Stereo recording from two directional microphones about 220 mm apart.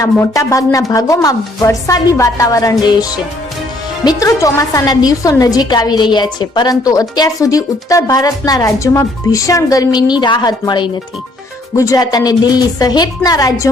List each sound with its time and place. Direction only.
0.0 s a woman's voice: 15° left (ahead or behind)